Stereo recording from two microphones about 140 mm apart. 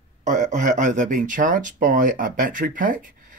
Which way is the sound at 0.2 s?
65° right (ahead or behind).